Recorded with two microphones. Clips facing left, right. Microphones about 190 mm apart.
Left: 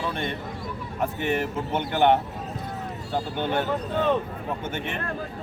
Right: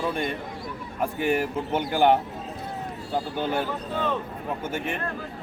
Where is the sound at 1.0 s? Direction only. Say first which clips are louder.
Right 1 dB; 5° right (ahead or behind).